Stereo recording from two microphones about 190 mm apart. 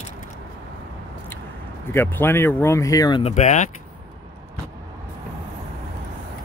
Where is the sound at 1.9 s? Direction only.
10° left (ahead or behind).